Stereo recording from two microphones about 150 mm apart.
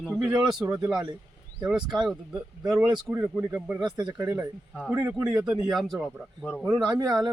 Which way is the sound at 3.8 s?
30° right (ahead or behind).